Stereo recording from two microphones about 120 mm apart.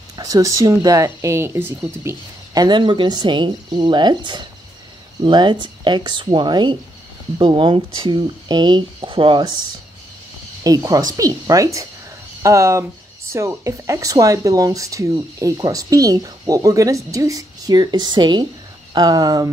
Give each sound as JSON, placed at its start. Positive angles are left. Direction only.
{"t": 0.1, "sound": "speech", "side_deg": -30}
{"t": 2.0, "sound": "speech", "side_deg": -35}
{"t": 10.6, "sound": "speech", "side_deg": -30}